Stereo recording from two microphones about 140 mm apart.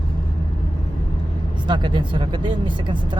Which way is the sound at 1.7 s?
35° right (ahead or behind).